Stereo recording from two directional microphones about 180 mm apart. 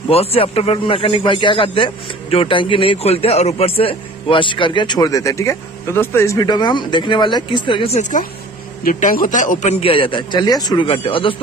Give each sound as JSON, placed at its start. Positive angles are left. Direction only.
{"t": 0.1, "sound": "a man's voice", "side_deg": 35}